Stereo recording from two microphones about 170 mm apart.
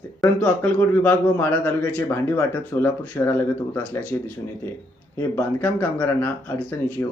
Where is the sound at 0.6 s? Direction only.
10° left (ahead or behind).